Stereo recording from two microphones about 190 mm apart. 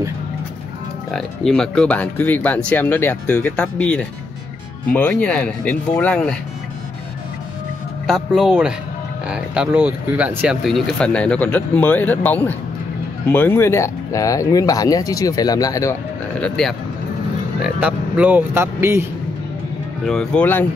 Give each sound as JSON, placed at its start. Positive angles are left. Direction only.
{"t": 1.1, "sound": "speech", "side_deg": 5}
{"t": 8.1, "sound": "speech", "side_deg": -5}
{"t": 17.6, "sound": "speech", "side_deg": -5}
{"t": 20.1, "sound": "speech", "side_deg": 5}